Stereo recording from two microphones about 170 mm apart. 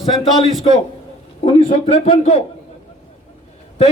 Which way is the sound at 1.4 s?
40° left (ahead or behind).